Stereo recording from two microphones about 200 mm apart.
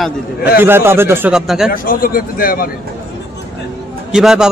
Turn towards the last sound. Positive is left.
turn(degrees=-5)  # may be behind; listen again after turning